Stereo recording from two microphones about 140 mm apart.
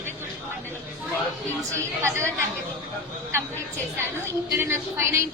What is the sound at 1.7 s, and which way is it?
Speech, 20° right (ahead or behind).